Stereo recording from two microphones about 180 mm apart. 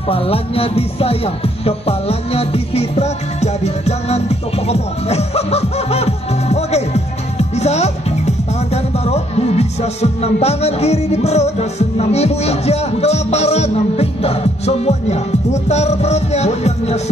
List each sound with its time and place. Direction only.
0.1 s speech: 35° left (ahead or behind)